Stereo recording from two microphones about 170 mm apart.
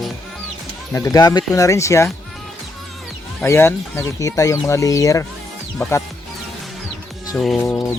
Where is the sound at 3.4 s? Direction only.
15° left (ahead or behind).